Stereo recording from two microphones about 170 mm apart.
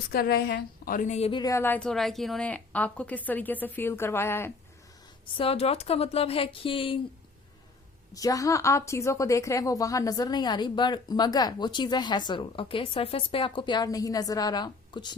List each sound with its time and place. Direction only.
0.1 s a woman's voice: 65° left (ahead or behind); by 1.4 s 40° left (ahead or behind)
1.4 s a woman's voice: 20° left (ahead or behind)
5.2 s speech: 35° left (ahead or behind)
8.1 s a woman's voice: 20° left (ahead or behind)